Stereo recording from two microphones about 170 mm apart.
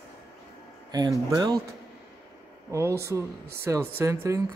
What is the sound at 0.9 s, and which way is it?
Speech, 25° right (ahead or behind).